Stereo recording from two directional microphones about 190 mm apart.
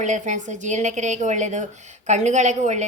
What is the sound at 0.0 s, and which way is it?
A woman's voice, 40° right (ahead or behind).